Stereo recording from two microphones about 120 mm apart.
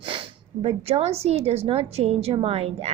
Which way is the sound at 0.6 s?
60° right (ahead or behind).